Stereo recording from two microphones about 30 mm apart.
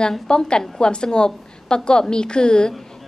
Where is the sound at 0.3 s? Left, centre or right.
Left.